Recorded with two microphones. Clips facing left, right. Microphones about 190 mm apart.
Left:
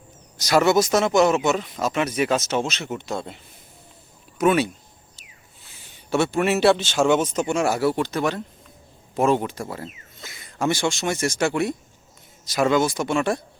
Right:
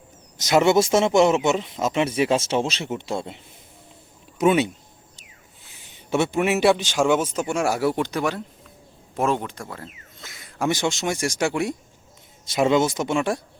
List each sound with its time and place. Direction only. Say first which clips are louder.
0.3 s speech: right 1 dB; 20° right (ahead or behind)
5.8 s a man's voice: even; 20° right (ahead or behind)
9.1 s speech: left 3 dB; centre (ahead or behind)
10.6 s a man's voice: even; 20° right (ahead or behind)
12.5 s speech: right 1 dB; 25° right (ahead or behind)